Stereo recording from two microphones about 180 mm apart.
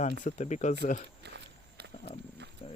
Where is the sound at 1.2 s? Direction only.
70° right (ahead or behind).